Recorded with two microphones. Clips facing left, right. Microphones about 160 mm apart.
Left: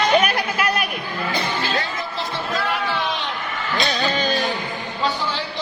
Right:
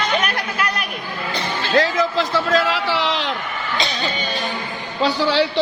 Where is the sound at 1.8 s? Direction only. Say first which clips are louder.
Right 9 dB; 90° right.